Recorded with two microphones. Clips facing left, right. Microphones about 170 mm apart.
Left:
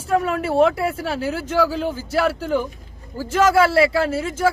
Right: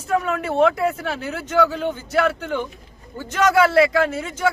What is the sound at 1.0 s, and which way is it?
Speech, 30° left (ahead or behind).